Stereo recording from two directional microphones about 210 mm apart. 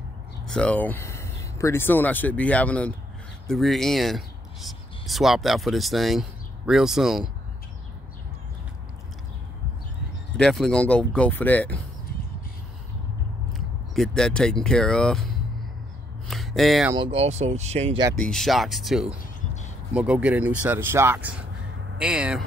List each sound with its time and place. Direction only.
0.5 s speech: 5° left (ahead or behind)
10.3 s speech: 5° left (ahead or behind)
13.5 s speech: centre (ahead or behind)
16.3 s a sound: centre (ahead or behind)
16.9 s speech: 25° right (ahead or behind)
18.2 s speech: centre (ahead or behind)
19.1 s a sound: 35° left (ahead or behind)
19.9 s speech: 5° right (ahead or behind)